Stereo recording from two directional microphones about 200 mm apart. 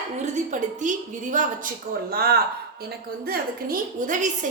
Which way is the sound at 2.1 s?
50° right (ahead or behind).